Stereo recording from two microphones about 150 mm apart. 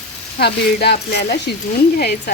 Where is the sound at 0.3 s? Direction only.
90° left.